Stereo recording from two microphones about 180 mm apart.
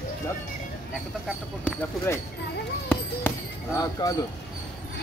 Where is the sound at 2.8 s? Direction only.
10° left (ahead or behind).